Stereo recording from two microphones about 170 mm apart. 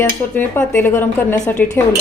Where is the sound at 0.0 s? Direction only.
10° left (ahead or behind).